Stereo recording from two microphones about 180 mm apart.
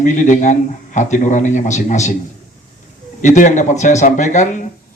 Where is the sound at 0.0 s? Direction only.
45° left (ahead or behind).